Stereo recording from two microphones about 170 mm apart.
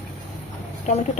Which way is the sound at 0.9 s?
45° left (ahead or behind).